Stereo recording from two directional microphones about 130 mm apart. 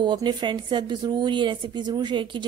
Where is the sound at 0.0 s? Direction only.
35° right (ahead or behind).